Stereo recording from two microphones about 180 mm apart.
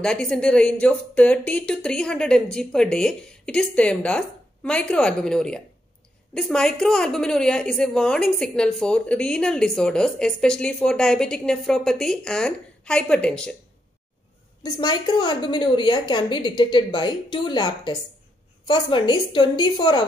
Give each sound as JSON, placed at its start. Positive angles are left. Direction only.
{"t": 0.0, "sound": "a woman's voice", "side_deg": 5}
{"t": 14.6, "sound": "a woman's voice", "side_deg": 25}